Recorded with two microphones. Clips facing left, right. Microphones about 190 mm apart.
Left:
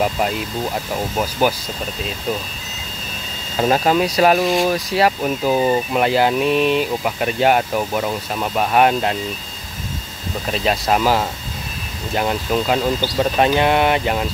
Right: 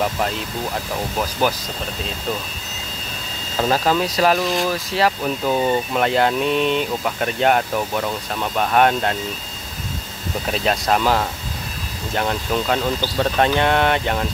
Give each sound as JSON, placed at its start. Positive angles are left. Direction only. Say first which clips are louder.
{"t": 1.4, "sound": "speech", "louder": "left 2 dB", "side_deg": 10}
{"t": 3.5, "sound": "speech", "louder": "left 2 dB", "side_deg": 15}
{"t": 10.5, "sound": "speech", "louder": "left 1 dB", "side_deg": 5}